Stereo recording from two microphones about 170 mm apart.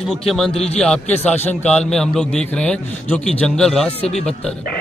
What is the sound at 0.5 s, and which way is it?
Speech, 35° left (ahead or behind).